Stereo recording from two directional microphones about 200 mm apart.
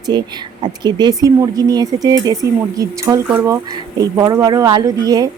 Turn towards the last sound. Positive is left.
turn(degrees=-20)  # may be behind; listen again after turning